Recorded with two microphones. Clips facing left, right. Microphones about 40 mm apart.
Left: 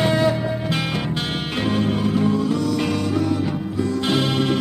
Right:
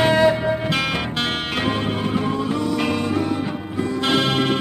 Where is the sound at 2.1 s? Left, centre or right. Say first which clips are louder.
Left 2 dB; right.